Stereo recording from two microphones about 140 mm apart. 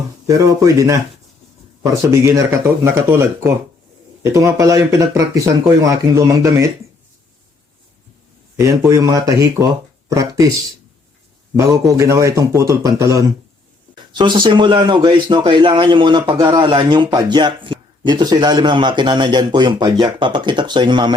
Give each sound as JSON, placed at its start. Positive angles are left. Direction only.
{"t": 0.3, "sound": "speech", "side_deg": -25}
{"t": 2.0, "sound": "speech", "side_deg": -20}
{"t": 8.5, "sound": "speech", "side_deg": -20}
{"t": 11.5, "sound": "speech", "side_deg": -20}
{"t": 13.9, "sound": "speech", "side_deg": -35}